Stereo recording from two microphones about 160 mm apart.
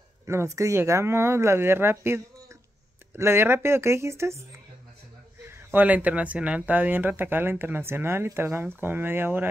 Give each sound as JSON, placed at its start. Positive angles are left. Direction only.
{"t": 0.6, "sound": "speech", "side_deg": -20}
{"t": 5.5, "sound": "speech", "side_deg": -10}